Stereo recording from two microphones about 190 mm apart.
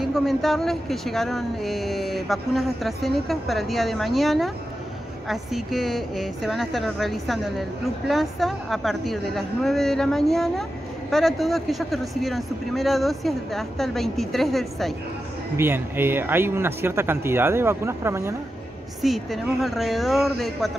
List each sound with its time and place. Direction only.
0.0 s speech: centre (ahead or behind)
15.5 s speech: 10° right (ahead or behind)
18.9 s speech: centre (ahead or behind)